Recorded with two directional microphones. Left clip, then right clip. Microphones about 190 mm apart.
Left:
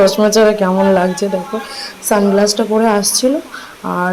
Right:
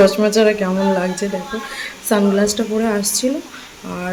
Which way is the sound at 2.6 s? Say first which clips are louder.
Left 6 dB; 10° left (ahead or behind).